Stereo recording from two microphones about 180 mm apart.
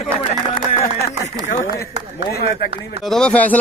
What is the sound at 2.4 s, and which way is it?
Speech, 30° right (ahead or behind).